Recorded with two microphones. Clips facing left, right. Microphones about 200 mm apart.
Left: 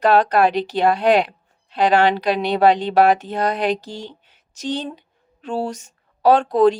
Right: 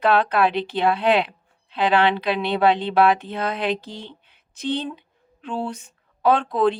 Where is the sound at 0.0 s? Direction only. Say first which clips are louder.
Left 3 dB; 40° left (ahead or behind).